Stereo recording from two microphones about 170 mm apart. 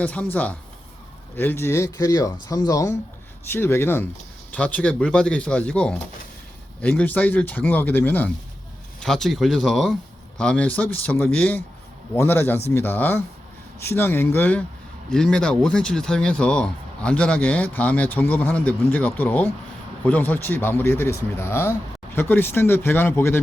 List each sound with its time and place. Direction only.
0.0 s speech: 10° left (ahead or behind)